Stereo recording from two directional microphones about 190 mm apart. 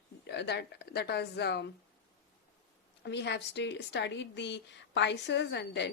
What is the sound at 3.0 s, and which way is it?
A woman's voice, 65° left (ahead or behind).